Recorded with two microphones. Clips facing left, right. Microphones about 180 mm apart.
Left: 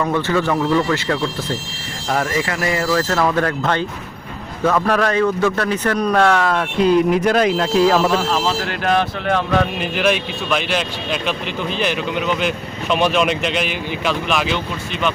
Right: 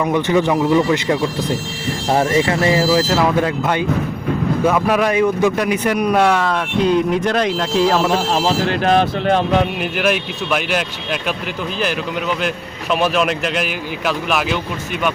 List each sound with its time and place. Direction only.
0.0 s a man's voice: 15° right (ahead or behind)
2.9 s a man's voice: 10° right (ahead or behind)
8.3 s speech: 30° right (ahead or behind)
10.0 s speech: 5° right (ahead or behind)
12.9 s speech: centre (ahead or behind)